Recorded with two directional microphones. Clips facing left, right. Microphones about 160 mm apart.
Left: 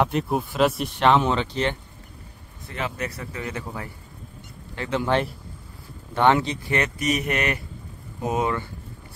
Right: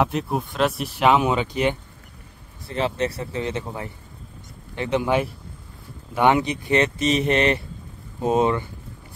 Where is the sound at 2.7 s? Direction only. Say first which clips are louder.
Right 6 dB; 30° right (ahead or behind).